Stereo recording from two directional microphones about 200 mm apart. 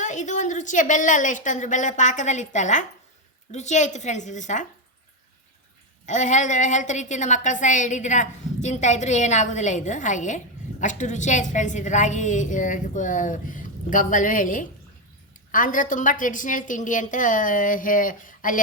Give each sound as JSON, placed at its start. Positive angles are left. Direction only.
{"t": 0.0, "sound": "a woman's voice", "side_deg": 40}
{"t": 6.1, "sound": "a woman's voice", "side_deg": 35}